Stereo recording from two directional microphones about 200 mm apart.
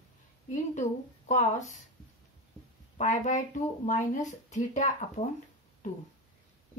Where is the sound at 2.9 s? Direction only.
40° left (ahead or behind).